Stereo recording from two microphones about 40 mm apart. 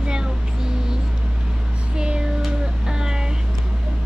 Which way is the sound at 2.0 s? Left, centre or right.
Right.